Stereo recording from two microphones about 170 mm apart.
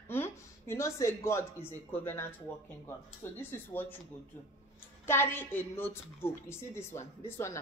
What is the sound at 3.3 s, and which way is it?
Speech, 10° left (ahead or behind).